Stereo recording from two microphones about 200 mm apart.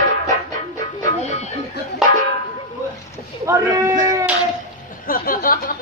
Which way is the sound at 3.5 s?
15° right (ahead or behind).